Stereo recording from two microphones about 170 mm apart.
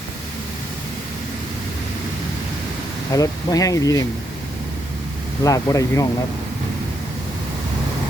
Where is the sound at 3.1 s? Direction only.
20° left (ahead or behind).